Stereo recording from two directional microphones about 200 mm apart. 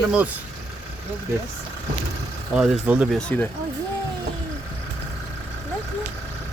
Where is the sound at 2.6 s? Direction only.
5° right (ahead or behind).